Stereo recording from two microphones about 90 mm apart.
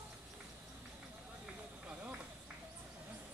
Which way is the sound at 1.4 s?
10° right (ahead or behind).